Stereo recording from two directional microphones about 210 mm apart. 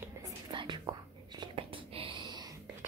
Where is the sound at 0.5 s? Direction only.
20° right (ahead or behind).